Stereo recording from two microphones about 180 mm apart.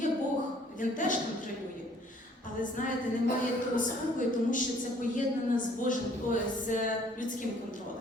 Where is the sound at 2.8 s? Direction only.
45° left (ahead or behind).